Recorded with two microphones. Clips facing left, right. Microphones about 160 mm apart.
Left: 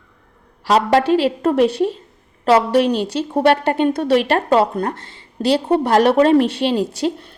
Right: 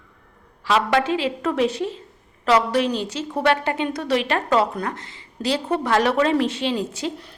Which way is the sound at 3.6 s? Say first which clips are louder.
Left 7 dB; 60° left (ahead or behind).